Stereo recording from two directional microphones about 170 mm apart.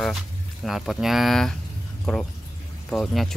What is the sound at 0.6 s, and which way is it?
Speech, centre (ahead or behind).